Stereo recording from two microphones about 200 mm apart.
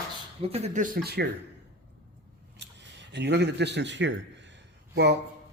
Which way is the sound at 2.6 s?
60° right (ahead or behind).